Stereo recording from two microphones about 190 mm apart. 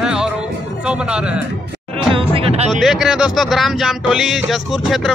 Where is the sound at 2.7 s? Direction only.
Centre (ahead or behind).